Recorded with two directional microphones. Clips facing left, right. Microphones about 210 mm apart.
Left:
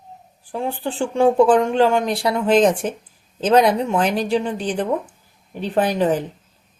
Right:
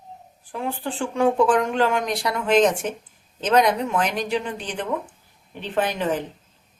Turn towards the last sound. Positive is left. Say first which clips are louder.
# left 5 dB
turn(degrees=35)  # may be behind; listen again after turning